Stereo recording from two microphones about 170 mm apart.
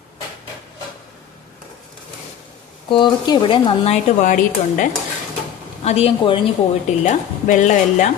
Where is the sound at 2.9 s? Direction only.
30° left (ahead or behind).